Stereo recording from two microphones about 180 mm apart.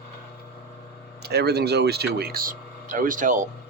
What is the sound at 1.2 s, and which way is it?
Speech, 65° right (ahead or behind).